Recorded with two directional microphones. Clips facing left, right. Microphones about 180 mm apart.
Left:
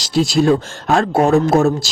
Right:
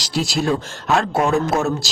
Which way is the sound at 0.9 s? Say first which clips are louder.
Left 5 dB; 35° left (ahead or behind).